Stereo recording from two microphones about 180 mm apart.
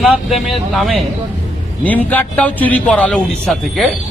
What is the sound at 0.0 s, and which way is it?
Speech, centre (ahead or behind).